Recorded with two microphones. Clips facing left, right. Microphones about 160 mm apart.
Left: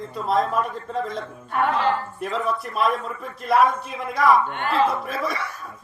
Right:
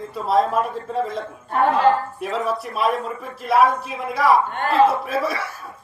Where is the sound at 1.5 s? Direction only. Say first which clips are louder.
Right 4 dB; 35° right (ahead or behind).